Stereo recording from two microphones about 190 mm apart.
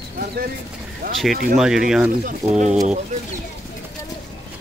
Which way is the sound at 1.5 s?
5° right (ahead or behind).